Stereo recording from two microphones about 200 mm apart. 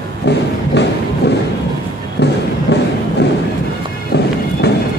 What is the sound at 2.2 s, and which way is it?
Music, 60° left (ahead or behind).